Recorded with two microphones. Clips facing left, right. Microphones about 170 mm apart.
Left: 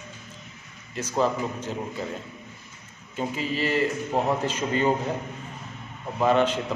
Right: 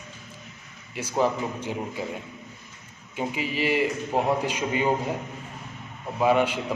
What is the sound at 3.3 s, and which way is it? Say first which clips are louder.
A man's voice: right 1 dB; 15° right (ahead or behind).